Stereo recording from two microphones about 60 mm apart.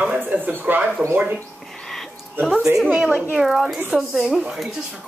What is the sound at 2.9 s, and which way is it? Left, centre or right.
Speech, right.